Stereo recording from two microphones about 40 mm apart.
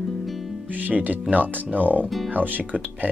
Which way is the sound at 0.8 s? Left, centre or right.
Right.